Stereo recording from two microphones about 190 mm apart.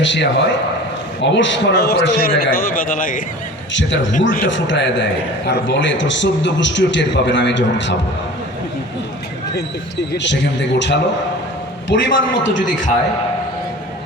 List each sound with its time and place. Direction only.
0.0 s a man's voice: 70° left (ahead or behind); by 3.2 s 45° left (ahead or behind)
3.7 s a man's voice: 70° left (ahead or behind)
10.1 s a man's voice: 70° left (ahead or behind)
12.5 s a man's voice: 40° left (ahead or behind)